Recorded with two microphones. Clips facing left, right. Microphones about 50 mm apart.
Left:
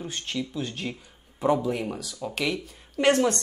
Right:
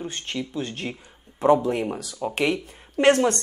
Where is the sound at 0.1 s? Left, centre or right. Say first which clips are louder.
Right 1 dB; right.